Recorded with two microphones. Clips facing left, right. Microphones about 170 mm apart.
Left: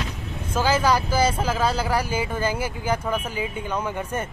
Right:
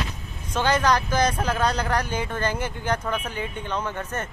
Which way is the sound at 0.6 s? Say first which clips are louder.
Left 1 dB; 5° left (ahead or behind).